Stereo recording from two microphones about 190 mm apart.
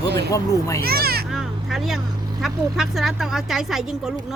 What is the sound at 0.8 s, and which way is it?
Speech, 55° right (ahead or behind).